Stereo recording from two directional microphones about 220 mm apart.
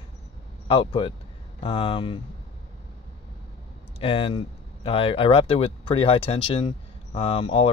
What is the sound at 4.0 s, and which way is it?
Speech, 25° left (ahead or behind).